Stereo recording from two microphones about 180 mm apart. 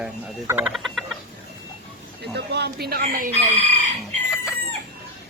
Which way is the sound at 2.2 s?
65° right (ahead or behind).